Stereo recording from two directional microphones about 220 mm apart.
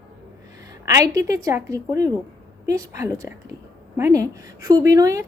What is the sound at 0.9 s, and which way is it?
A woman's voice, 15° right (ahead or behind).